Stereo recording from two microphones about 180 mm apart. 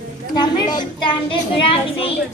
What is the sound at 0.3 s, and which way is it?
A child's voice, 25° left (ahead or behind).